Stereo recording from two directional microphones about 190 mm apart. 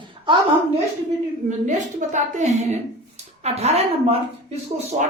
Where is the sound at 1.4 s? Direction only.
40° right (ahead or behind).